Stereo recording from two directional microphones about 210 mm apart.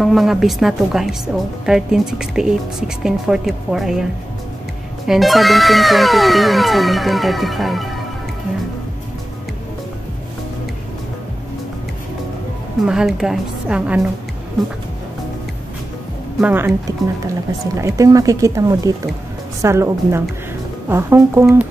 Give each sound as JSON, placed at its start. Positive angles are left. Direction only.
{"t": 0.0, "sound": "speech", "side_deg": 0}
{"t": 12.8, "sound": "speech", "side_deg": -5}
{"t": 16.3, "sound": "speech", "side_deg": -10}